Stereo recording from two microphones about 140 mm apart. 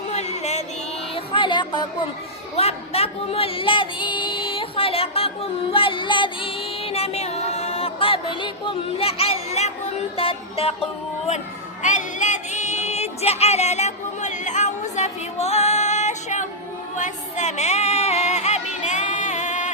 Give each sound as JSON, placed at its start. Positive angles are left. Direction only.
{"t": 0.1, "sound": "music", "side_deg": 50}
{"t": 1.1, "sound": "a sound", "side_deg": 35}
{"t": 2.6, "sound": "speech", "side_deg": 45}
{"t": 11.8, "sound": "music", "side_deg": 60}